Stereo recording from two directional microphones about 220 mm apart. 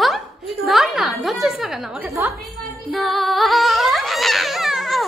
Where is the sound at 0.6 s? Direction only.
Centre (ahead or behind).